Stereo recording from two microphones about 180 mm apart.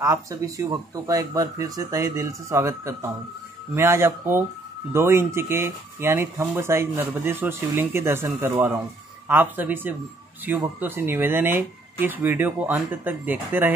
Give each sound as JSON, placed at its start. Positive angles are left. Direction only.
{"t": 0.0, "sound": "speech", "side_deg": -15}